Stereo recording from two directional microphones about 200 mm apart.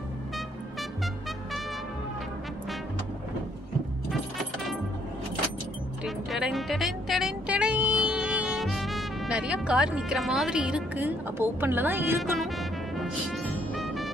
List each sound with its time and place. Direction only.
6.0 s speech: centre (ahead or behind)
12.4 s music: centre (ahead or behind)